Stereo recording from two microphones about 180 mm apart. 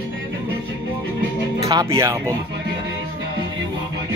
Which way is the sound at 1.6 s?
20° right (ahead or behind).